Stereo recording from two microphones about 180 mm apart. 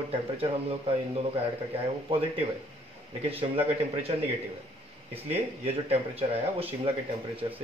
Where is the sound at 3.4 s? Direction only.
30° right (ahead or behind).